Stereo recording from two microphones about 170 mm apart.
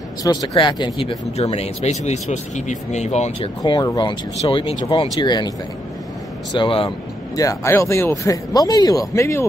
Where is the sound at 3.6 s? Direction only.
25° left (ahead or behind).